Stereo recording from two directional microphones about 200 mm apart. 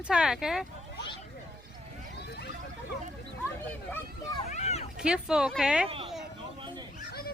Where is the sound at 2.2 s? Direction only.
55° left (ahead or behind).